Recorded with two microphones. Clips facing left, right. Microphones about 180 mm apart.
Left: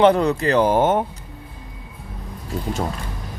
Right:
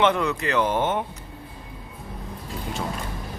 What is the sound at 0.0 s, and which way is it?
Speech, 35° left (ahead or behind).